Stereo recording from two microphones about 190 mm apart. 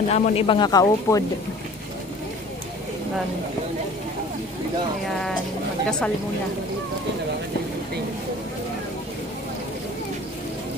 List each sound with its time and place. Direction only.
0.1 s speech: 30° left (ahead or behind)
5.9 s speech: 5° left (ahead or behind)